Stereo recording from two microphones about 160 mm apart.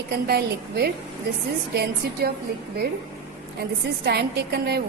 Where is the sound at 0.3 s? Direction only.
80° right.